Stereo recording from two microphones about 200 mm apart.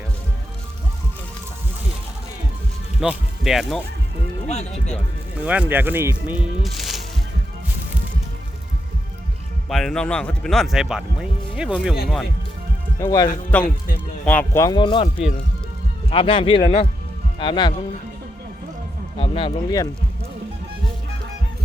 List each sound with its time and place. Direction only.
3.0 s speech: centre (ahead or behind)
4.4 s speech: 30° left (ahead or behind)
5.4 s speech: 5° right (ahead or behind)
9.6 s speech: centre (ahead or behind)
13.0 s a man's voice: 15° left (ahead or behind)
19.2 s a man's voice: 25° left (ahead or behind)